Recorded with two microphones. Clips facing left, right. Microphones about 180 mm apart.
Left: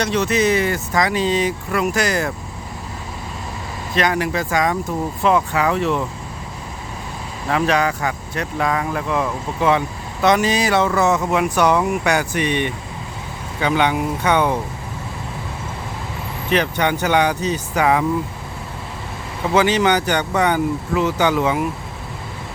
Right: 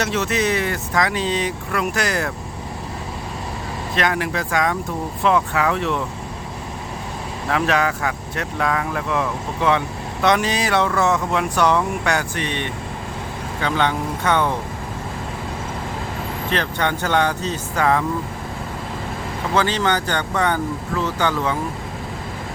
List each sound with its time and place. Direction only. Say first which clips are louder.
0.0 s speech: left 3 dB; centre (ahead or behind)
3.9 s speech: left 3 dB; centre (ahead or behind)
7.4 s speech: left 2 dB; centre (ahead or behind)
16.5 s speech: left 4 dB; 15° left (ahead or behind)
19.5 s speech: left 4 dB; 15° left (ahead or behind)